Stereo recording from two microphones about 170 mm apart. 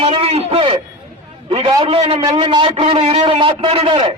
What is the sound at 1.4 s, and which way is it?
A man's voice, 30° right (ahead or behind).